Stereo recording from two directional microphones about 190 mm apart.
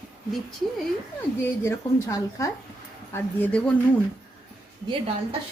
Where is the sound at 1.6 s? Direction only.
15° left (ahead or behind).